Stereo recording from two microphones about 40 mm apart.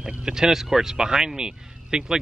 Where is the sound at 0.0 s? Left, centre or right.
Centre.